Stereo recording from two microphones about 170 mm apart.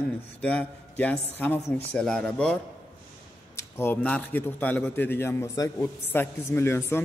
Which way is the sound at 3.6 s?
15° left (ahead or behind).